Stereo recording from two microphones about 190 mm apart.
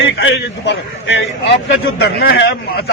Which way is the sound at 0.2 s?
70° left (ahead or behind).